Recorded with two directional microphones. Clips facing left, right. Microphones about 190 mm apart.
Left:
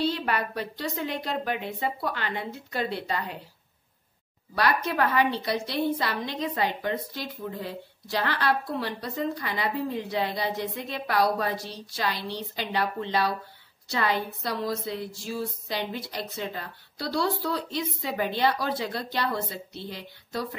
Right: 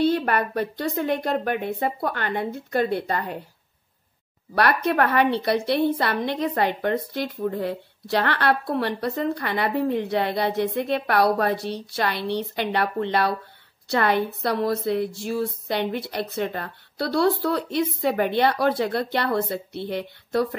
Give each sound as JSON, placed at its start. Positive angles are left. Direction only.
{"t": 0.0, "sound": "speech", "side_deg": -55}
{"t": 4.6, "sound": "a woman's voice", "side_deg": -60}